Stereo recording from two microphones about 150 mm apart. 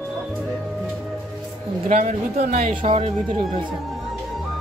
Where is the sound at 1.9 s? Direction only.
60° right (ahead or behind).